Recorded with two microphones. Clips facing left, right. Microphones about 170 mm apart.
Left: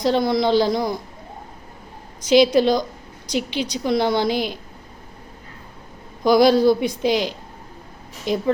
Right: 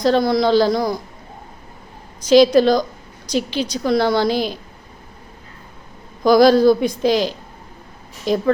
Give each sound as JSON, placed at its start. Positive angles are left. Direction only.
{"t": 0.0, "sound": "speech", "side_deg": 20}
{"t": 2.2, "sound": "a woman's voice", "side_deg": 15}
{"t": 6.2, "sound": "a woman's voice", "side_deg": 15}